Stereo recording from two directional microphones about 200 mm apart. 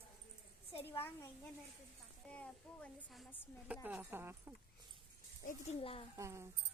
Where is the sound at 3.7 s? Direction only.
10° right (ahead or behind).